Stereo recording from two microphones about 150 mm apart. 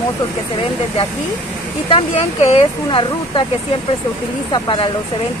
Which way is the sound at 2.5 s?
40° left (ahead or behind).